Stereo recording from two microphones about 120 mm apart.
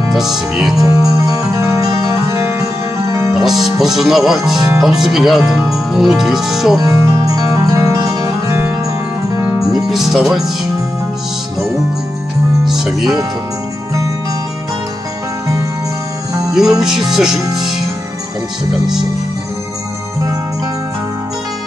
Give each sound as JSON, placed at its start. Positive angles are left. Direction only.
{"t": 0.1, "sound": "speech", "side_deg": -5}
{"t": 0.8, "sound": "music", "side_deg": -30}
{"t": 3.3, "sound": "speech", "side_deg": 0}
{"t": 6.8, "sound": "music", "side_deg": -30}
{"t": 9.8, "sound": "music", "side_deg": 0}
{"t": 12.6, "sound": "music", "side_deg": -5}
{"t": 17.1, "sound": "speech", "side_deg": -5}